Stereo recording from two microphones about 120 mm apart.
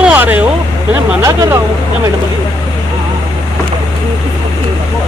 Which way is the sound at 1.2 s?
25° right (ahead or behind).